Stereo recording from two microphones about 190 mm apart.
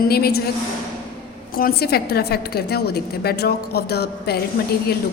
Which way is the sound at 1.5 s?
55° left (ahead or behind).